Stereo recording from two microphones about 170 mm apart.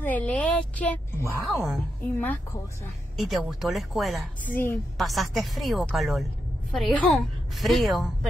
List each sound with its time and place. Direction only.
0.0 s a woman's voice: 10° left (ahead or behind)
2.1 s a woman's voice: 10° left (ahead or behind)
3.2 s a woman's voice: centre (ahead or behind)
4.5 s a woman's voice: 10° left (ahead or behind)
4.9 s a woman's voice: centre (ahead or behind)